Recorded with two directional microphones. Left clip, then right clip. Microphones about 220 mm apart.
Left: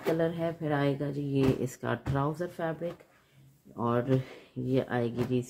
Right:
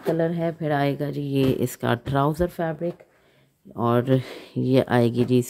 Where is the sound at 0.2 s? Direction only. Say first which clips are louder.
Right 6 dB; 40° right (ahead or behind).